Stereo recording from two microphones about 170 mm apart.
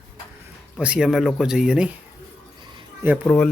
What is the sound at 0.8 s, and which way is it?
Speech, 5° right (ahead or behind).